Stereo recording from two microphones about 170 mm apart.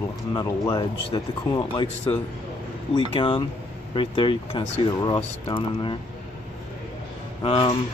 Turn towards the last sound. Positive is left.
turn(degrees=30)  # may be behind; listen again after turning